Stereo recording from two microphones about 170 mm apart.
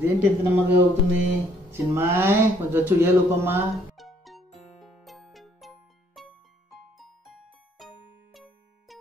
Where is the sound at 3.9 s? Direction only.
Centre (ahead or behind).